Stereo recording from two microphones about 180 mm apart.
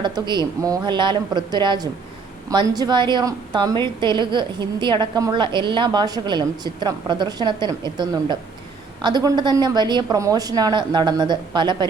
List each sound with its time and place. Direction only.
0.0 s a woman's voice: 25° right (ahead or behind)